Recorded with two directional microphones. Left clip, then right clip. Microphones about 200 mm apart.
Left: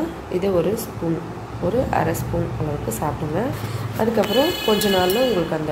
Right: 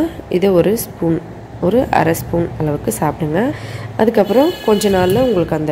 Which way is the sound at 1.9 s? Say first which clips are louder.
Right 7 dB; 45° right (ahead or behind).